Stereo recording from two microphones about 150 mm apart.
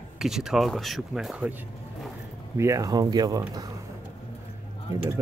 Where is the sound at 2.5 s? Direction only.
20° right (ahead or behind).